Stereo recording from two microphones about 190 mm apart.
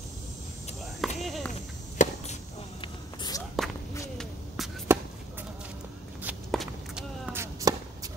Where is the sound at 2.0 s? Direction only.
40° left (ahead or behind).